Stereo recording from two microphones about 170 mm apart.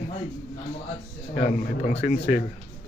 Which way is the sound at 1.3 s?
50° left (ahead or behind).